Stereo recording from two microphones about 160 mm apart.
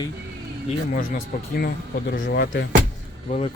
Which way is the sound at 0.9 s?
70° left (ahead or behind).